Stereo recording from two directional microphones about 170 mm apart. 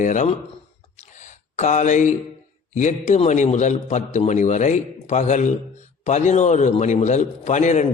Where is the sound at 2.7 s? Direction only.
45° left (ahead or behind).